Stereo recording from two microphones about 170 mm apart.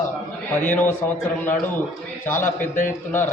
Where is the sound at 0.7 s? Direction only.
10° left (ahead or behind).